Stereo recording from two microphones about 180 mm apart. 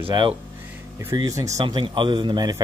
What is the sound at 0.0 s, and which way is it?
A man's voice, 25° right (ahead or behind).